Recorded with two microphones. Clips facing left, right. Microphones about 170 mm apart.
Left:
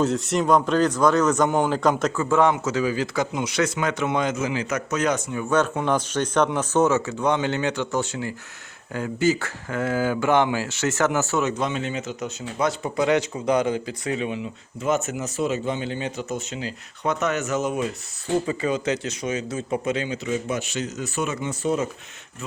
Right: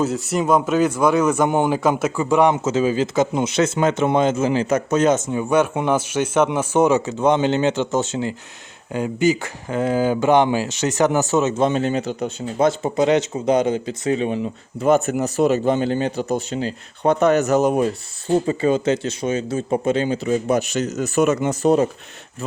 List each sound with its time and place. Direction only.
0.0 s speech: 5° right (ahead or behind); by 1.8 s 20° right (ahead or behind)
1.8 s a man's voice: 5° right (ahead or behind)
5.9 s a man's voice: 10° right (ahead or behind); by 11.7 s 25° right (ahead or behind)
11.7 s a man's voice: 40° right (ahead or behind)
14.8 s speech: 60° right (ahead or behind)
15.5 s a man's voice: 40° right (ahead or behind)